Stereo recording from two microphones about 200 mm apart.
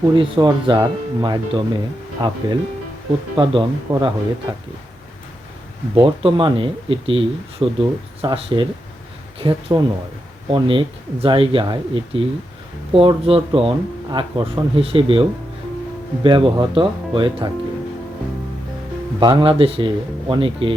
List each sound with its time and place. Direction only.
0.1 s speech: 20° right (ahead or behind)
5.9 s speech: 25° right (ahead or behind)
19.2 s speech: 25° right (ahead or behind)